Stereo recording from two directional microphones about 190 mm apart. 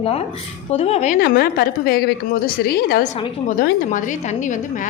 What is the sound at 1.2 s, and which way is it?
A woman's voice, 55° left (ahead or behind).